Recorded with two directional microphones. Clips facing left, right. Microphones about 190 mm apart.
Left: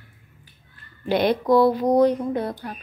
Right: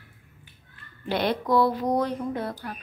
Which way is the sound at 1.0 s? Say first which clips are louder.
Left 6 dB; 15° left (ahead or behind).